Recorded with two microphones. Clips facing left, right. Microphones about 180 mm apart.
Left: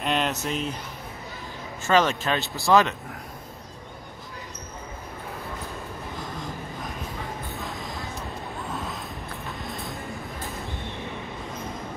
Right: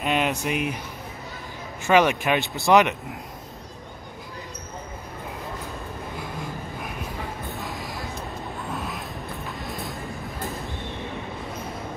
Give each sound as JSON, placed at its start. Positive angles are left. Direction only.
{"t": 0.0, "sound": "speech", "side_deg": -10}
{"t": 1.9, "sound": "speech", "side_deg": -15}
{"t": 7.5, "sound": "a sound", "side_deg": 0}